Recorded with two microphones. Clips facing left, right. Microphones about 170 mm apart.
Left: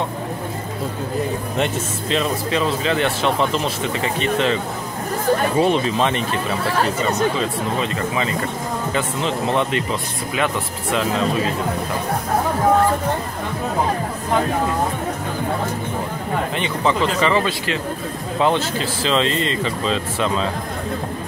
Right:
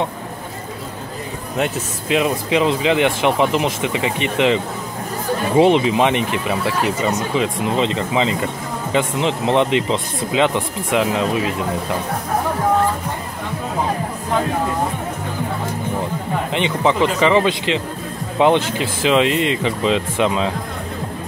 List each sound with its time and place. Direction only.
1.6 s speech: 10° right (ahead or behind)
5.6 s speech: 15° right (ahead or behind)
16.5 s speech: 15° right (ahead or behind)